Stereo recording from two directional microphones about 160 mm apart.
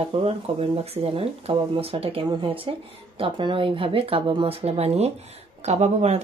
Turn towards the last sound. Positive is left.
turn(degrees=-45)  # may be behind; listen again after turning